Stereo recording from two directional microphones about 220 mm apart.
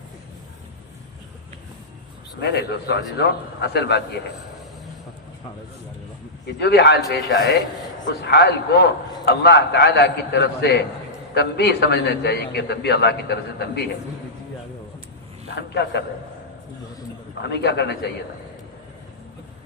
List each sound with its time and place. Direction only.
2.4 s a man's voice: 50° left (ahead or behind)
6.6 s a man's voice: 50° left (ahead or behind)
15.4 s a man's voice: 50° left (ahead or behind)
17.4 s a man's voice: 50° left (ahead or behind)